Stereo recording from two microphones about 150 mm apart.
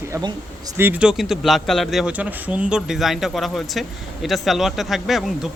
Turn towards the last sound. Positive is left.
turn(degrees=0)  # may be behind; listen again after turning